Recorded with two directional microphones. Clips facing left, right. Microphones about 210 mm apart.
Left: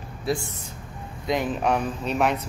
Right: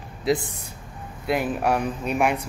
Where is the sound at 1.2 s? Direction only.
10° right (ahead or behind).